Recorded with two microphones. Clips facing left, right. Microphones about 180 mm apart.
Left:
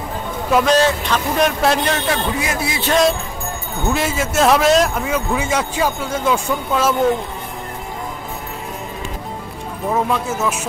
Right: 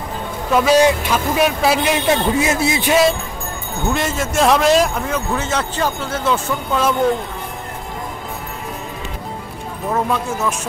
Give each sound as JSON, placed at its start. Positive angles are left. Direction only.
{"t": 0.5, "sound": "speech", "side_deg": 0}
{"t": 0.7, "sound": "speech", "side_deg": -10}
{"t": 2.0, "sound": "a man's voice", "side_deg": -25}
{"t": 2.8, "sound": "a man's voice", "side_deg": -5}
{"t": 9.8, "sound": "speech", "side_deg": 0}